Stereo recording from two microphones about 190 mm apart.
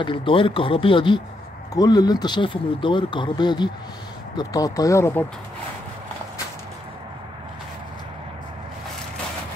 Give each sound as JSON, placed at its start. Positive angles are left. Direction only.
{"t": 0.0, "sound": "speech", "side_deg": 25}